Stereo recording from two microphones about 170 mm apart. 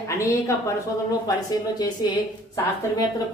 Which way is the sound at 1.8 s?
25° left (ahead or behind).